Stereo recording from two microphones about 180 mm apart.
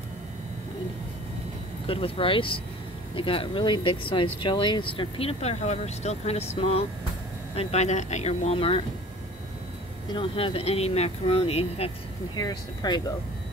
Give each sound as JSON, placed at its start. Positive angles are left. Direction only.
{"t": 1.9, "sound": "speech", "side_deg": 30}
{"t": 10.1, "sound": "speech", "side_deg": 30}
{"t": 12.4, "sound": "speech", "side_deg": 20}